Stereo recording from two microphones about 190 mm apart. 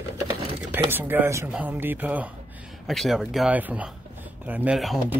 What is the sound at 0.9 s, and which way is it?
Speech, 10° right (ahead or behind).